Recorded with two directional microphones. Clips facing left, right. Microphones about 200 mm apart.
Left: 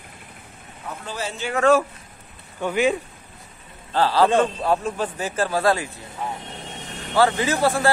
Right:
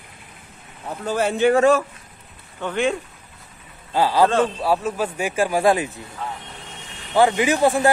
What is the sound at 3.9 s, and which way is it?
A man's voice, 10° right (ahead or behind).